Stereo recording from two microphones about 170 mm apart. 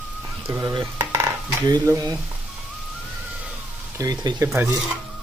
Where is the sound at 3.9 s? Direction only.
20° right (ahead or behind).